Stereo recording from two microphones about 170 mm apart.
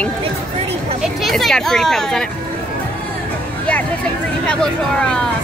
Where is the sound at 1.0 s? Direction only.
Centre (ahead or behind).